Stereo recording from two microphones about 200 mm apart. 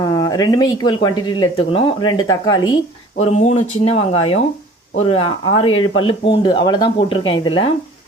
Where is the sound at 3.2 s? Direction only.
35° left (ahead or behind).